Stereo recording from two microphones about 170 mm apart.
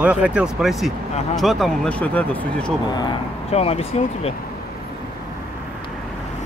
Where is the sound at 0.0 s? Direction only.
5° right (ahead or behind); by 2.7 s 10° left (ahead or behind).